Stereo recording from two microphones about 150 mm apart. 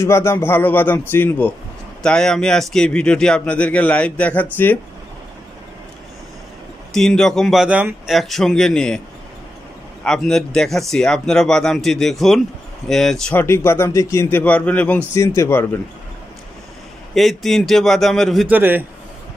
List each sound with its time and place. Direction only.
0.0 s a man's voice: 20° left (ahead or behind)
6.9 s speech: 5° left (ahead or behind)
10.0 s speech: 5° left (ahead or behind)
13.4 s a man's voice: 15° left (ahead or behind)
17.1 s speech: centre (ahead or behind)
18.5 s a man's voice: 15° right (ahead or behind)